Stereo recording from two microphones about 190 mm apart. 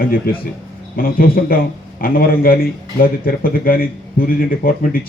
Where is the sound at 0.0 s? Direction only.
50° left (ahead or behind).